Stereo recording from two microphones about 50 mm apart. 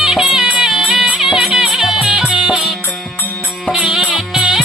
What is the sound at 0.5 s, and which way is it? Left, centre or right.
Music, centre.